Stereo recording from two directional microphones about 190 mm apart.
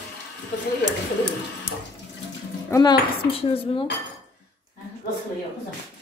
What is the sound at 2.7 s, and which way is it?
Speech, 20° left (ahead or behind).